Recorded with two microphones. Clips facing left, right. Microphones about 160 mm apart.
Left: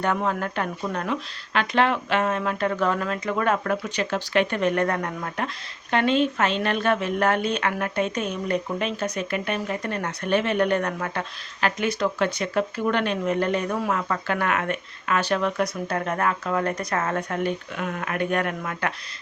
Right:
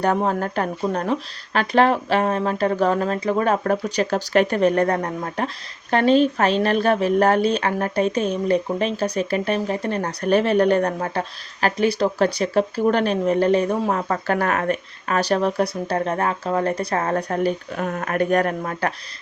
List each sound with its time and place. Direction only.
0.0 s a woman's voice: 35° right (ahead or behind)